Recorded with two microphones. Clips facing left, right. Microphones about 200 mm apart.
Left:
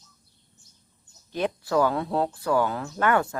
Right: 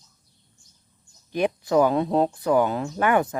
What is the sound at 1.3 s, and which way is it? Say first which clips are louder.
Speech: right 4 dB; 15° right (ahead or behind).